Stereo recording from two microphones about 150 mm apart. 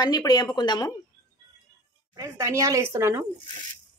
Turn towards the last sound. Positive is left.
turn(degrees=-15)  # may be behind; listen again after turning